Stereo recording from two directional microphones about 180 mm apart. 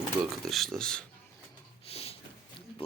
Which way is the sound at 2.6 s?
30° left (ahead or behind).